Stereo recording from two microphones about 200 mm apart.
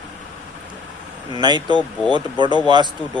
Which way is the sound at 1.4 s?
20° right (ahead or behind).